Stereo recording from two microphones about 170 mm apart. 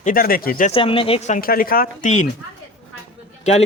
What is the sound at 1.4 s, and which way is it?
Speech, 60° left (ahead or behind).